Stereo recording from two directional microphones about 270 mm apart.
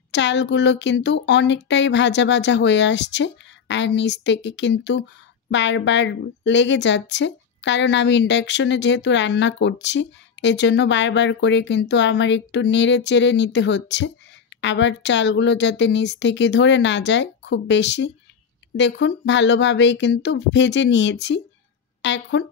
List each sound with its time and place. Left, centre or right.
0.1 s a woman's voice: left